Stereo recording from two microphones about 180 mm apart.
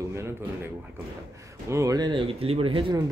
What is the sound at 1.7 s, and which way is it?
Speech, 20° right (ahead or behind).